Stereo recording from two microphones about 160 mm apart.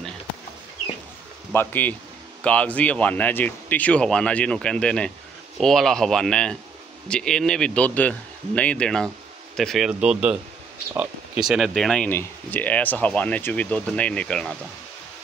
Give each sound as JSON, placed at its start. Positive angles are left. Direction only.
{"t": 1.5, "sound": "speech", "side_deg": 15}